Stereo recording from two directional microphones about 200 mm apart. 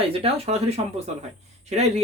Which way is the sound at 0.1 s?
30° right (ahead or behind).